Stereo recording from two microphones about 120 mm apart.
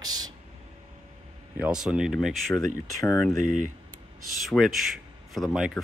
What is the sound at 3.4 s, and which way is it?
Speech, 90° right.